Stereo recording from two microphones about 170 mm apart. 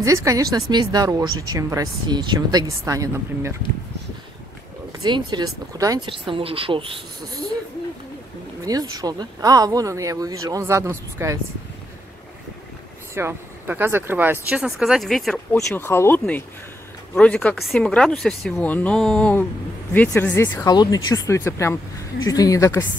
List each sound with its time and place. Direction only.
0.0 s speech: 20° right (ahead or behind)
4.9 s speech: 25° right (ahead or behind)
8.6 s speech: 20° right (ahead or behind)
13.1 s speech: 15° right (ahead or behind); by 15.4 s centre (ahead or behind)
15.5 s speech: 15° left (ahead or behind)
20.7 s speech: 25° left (ahead or behind)